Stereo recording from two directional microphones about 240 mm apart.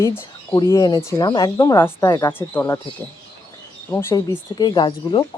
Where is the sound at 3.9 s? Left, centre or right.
Centre.